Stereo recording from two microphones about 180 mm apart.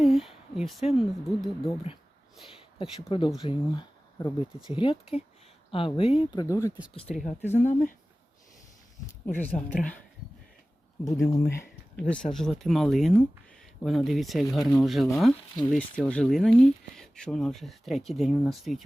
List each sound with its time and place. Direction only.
0.0 s a sound: centre (ahead or behind)
0.9 s speech: centre (ahead or behind)
1.6 s speech: 30° left (ahead or behind)
3.0 s speech: 30° left (ahead or behind)
6.4 s speech: 15° left (ahead or behind)
7.1 s speech: 45° left (ahead or behind)
9.0 s speech: 10° left (ahead or behind)
11.0 s speech: 15° left (ahead or behind)
11.5 s speech: 5° left (ahead or behind)